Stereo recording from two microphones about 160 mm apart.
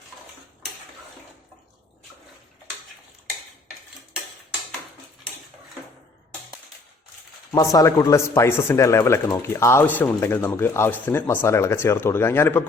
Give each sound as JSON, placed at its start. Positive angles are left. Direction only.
{"t": 7.5, "sound": "speech", "side_deg": 20}